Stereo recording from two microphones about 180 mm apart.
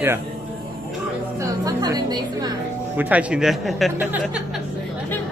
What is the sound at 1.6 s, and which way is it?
Speech, 20° right (ahead or behind).